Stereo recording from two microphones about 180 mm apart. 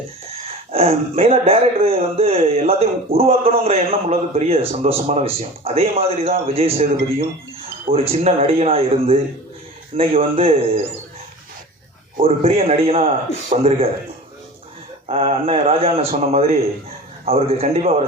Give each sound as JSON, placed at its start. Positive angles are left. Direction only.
{"t": 0.4, "sound": "speech", "side_deg": -35}
{"t": 7.9, "sound": "speech", "side_deg": -35}
{"t": 12.2, "sound": "speech", "side_deg": -35}
{"t": 15.0, "sound": "speech", "side_deg": -30}